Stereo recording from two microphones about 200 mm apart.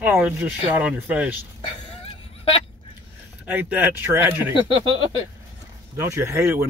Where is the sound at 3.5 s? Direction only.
10° right (ahead or behind).